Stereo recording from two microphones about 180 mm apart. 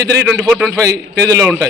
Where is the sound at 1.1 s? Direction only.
15° right (ahead or behind).